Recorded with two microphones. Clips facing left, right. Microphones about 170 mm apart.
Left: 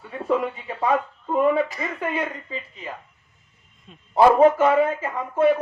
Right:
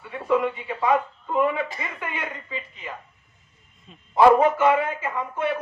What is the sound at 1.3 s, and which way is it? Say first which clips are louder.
A man's voice: left 3 dB; 40° left (ahead or behind).